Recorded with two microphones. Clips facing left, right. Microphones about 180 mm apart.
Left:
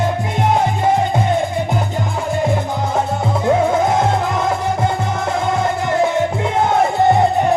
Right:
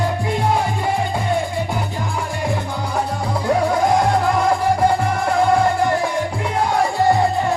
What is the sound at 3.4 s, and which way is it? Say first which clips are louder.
Music: left 2 dB; 20° left (ahead or behind).